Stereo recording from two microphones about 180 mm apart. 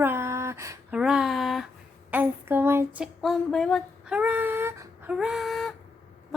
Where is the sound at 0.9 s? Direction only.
5° right (ahead or behind).